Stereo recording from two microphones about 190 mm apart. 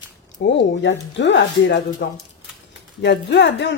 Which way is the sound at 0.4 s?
65° left (ahead or behind).